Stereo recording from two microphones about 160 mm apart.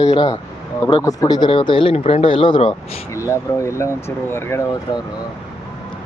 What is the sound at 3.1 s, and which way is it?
Speech, 20° left (ahead or behind).